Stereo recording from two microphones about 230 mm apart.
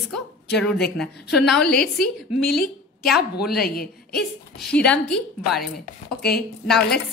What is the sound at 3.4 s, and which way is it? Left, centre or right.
Speech, left.